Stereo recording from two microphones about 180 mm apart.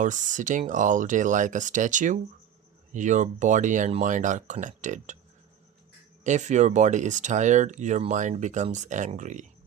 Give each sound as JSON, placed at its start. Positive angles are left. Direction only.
{"t": 0.0, "sound": "speech", "side_deg": -45}
{"t": 6.2, "sound": "speech", "side_deg": -40}